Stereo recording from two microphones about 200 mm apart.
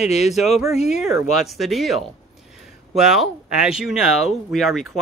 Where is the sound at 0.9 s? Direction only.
Centre (ahead or behind).